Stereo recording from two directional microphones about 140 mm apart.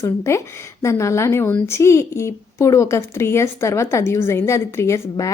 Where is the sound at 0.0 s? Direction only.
20° left (ahead or behind).